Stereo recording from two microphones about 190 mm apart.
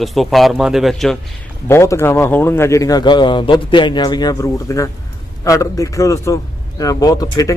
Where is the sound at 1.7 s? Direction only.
15° left (ahead or behind).